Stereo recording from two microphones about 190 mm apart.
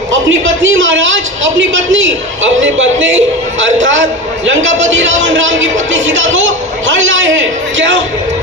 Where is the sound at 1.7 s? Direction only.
90° right.